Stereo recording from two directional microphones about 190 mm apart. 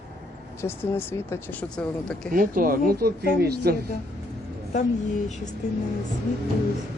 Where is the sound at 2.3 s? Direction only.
45° right (ahead or behind).